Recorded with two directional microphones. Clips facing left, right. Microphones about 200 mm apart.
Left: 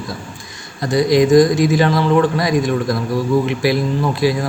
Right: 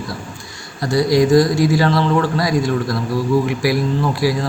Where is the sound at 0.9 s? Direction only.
20° left (ahead or behind).